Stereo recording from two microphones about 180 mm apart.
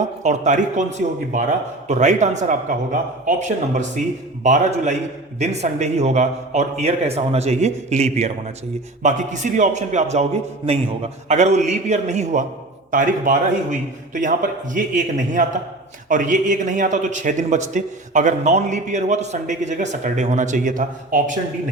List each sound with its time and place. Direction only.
0.2 s a man's voice: 40° right (ahead or behind)